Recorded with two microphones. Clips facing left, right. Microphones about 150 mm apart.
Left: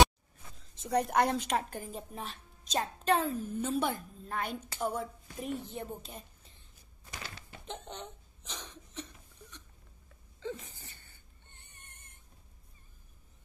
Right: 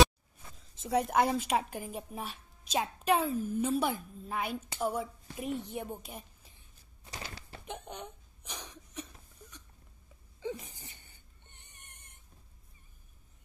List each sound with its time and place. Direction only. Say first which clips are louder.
0.6 s a woman's voice: even; centre (ahead or behind)
7.6 s cough: even; 10° right (ahead or behind)
10.4 s a sound: right 1 dB; 15° right (ahead or behind)